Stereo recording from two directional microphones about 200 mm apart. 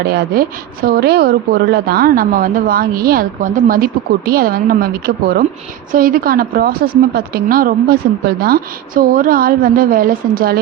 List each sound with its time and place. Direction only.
0.1 s a woman's voice: 50° right (ahead or behind)